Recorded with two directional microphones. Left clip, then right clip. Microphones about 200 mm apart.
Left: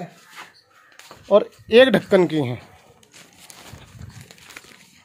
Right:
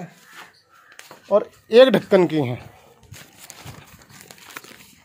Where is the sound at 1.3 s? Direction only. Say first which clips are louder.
Left 3 dB; 40° left (ahead or behind).